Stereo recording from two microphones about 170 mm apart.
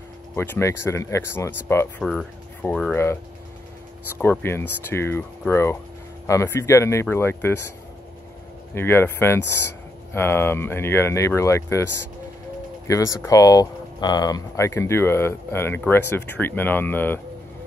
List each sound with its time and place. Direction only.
0.4 s speech: 15° left (ahead or behind)
2.0 s speech: centre (ahead or behind)
4.2 s speech: 15° left (ahead or behind)
8.7 s speech: 15° left (ahead or behind)
12.8 s speech: 20° left (ahead or behind)